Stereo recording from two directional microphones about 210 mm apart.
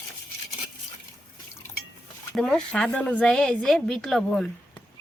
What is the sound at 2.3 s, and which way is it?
Speech, 5° left (ahead or behind).